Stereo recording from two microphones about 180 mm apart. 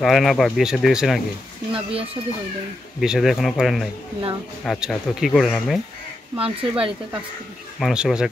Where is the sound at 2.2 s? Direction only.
30° right (ahead or behind).